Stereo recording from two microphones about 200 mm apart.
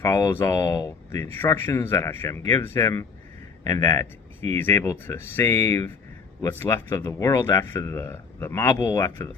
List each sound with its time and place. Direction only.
0.0 s speech: 15° left (ahead or behind)